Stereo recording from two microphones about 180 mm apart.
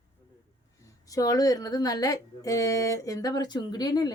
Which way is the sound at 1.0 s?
20° left (ahead or behind).